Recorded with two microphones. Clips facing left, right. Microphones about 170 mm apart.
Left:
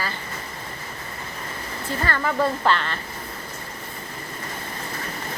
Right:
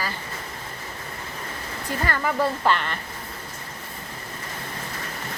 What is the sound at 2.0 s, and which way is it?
Speech, 10° right (ahead or behind).